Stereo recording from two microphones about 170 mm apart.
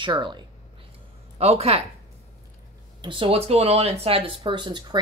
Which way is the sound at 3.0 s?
30° right (ahead or behind).